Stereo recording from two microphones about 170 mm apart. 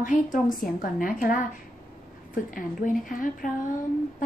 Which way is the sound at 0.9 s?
55° left (ahead or behind).